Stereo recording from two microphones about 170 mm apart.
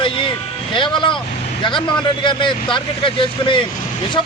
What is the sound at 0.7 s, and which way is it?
Speech, 30° left (ahead or behind).